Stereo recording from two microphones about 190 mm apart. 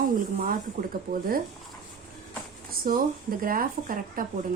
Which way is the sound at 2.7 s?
50° right (ahead or behind).